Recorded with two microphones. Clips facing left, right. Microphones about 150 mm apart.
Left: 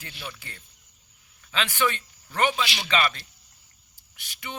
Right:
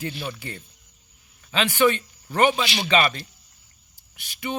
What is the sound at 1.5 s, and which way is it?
A man's voice, 15° right (ahead or behind).